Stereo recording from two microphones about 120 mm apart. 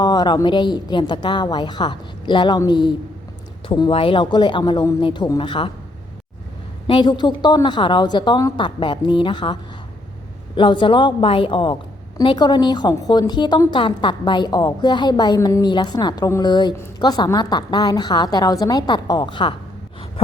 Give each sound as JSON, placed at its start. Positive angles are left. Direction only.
{"t": 0.0, "sound": "a woman's voice", "side_deg": 35}
{"t": 6.8, "sound": "a woman's voice", "side_deg": 40}